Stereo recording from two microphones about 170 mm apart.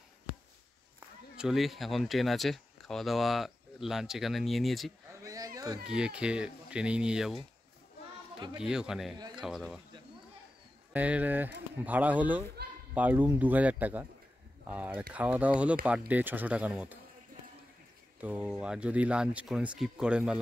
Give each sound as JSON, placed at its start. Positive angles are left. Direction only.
{"t": 1.3, "sound": "speech", "side_deg": -5}
{"t": 5.2, "sound": "a sound", "side_deg": -20}
{"t": 5.9, "sound": "speech", "side_deg": -5}
{"t": 8.5, "sound": "speech", "side_deg": -5}
{"t": 10.9, "sound": "speech", "side_deg": -10}
{"t": 18.2, "sound": "speech", "side_deg": -5}